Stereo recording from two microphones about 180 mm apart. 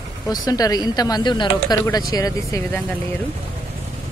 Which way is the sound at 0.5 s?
20° left (ahead or behind).